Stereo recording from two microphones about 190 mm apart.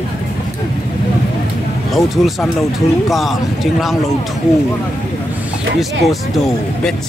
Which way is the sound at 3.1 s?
Centre (ahead or behind).